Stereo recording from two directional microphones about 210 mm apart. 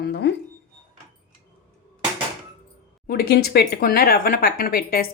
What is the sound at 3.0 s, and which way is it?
Speech, 50° left (ahead or behind).